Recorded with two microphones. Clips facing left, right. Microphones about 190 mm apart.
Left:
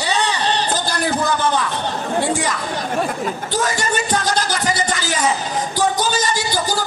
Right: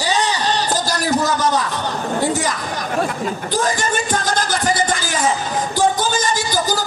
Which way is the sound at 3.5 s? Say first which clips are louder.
Right 1 dB; 45° right (ahead or behind).